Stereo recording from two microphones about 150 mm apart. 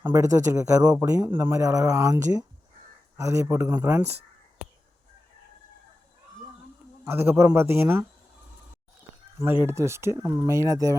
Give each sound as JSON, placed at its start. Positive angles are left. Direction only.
{"t": 0.1, "sound": "speech", "side_deg": -20}
{"t": 7.0, "sound": "speech", "side_deg": -15}
{"t": 9.6, "sound": "speech", "side_deg": -20}